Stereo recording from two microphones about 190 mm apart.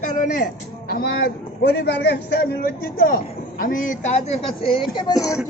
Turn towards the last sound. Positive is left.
turn(degrees=20)  # may be behind; listen again after turning